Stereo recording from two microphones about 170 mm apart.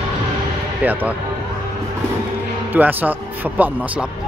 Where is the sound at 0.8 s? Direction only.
10° right (ahead or behind).